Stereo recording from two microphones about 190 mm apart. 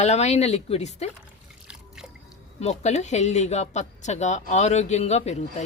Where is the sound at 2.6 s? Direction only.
35° left (ahead or behind).